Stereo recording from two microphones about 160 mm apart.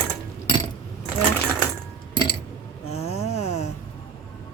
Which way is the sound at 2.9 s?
40° left (ahead or behind).